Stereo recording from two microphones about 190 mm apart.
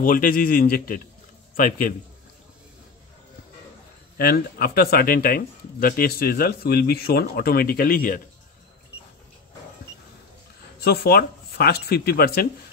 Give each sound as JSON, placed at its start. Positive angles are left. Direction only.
{"t": 0.0, "sound": "speech", "side_deg": 45}
{"t": 4.2, "sound": "speech", "side_deg": 55}
{"t": 10.8, "sound": "speech", "side_deg": 55}